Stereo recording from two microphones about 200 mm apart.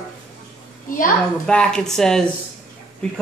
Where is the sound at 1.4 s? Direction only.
5° left (ahead or behind).